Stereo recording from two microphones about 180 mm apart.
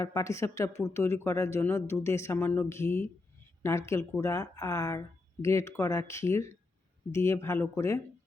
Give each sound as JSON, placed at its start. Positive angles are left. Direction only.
{"t": 0.0, "sound": "speech", "side_deg": 20}